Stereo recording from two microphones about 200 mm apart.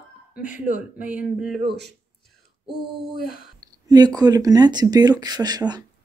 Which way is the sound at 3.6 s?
20° right (ahead or behind).